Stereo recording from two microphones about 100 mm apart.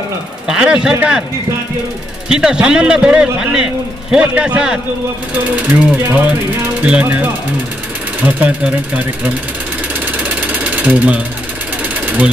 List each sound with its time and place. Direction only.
0.5 s a man's voice: 10° right (ahead or behind)
2.2 s a man's voice: 5° right (ahead or behind)
10.1 s a sound: 15° right (ahead or behind)
11.9 s sewing machine: 15° right (ahead or behind)